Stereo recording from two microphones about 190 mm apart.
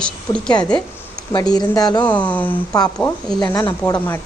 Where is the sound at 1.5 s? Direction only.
20° left (ahead or behind).